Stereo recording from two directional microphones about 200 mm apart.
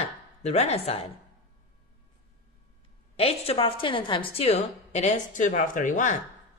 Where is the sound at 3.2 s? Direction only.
30° left (ahead or behind).